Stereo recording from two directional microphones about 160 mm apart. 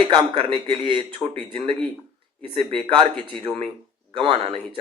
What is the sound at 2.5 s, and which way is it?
Speech, 35° right (ahead or behind).